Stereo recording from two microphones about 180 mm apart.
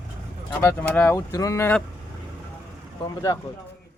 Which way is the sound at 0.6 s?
15° left (ahead or behind).